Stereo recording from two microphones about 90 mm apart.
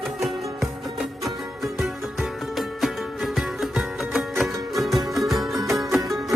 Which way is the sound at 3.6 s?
Centre (ahead or behind).